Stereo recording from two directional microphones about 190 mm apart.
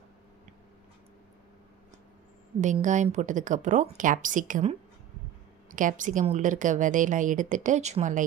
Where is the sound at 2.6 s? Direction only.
40° right (ahead or behind).